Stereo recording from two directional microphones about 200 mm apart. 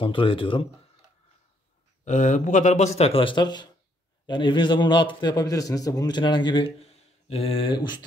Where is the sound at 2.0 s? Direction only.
40° left (ahead or behind).